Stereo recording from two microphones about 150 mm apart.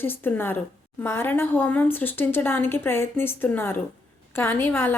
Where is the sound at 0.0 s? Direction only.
15° left (ahead or behind).